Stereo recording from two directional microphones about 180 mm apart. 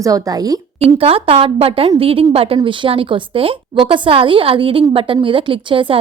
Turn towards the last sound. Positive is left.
turn(degrees=-30)  # may be behind; listen again after turning